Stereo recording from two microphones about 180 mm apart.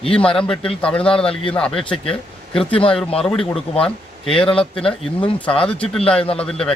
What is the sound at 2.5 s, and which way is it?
A man's voice, 5° left (ahead or behind).